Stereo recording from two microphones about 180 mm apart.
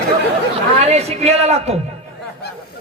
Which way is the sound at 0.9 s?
35° right (ahead or behind).